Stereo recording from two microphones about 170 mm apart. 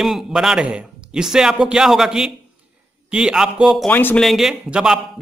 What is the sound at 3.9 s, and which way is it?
Speech, 10° left (ahead or behind).